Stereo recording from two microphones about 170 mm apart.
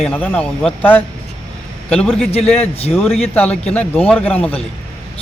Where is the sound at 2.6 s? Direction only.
35° left (ahead or behind).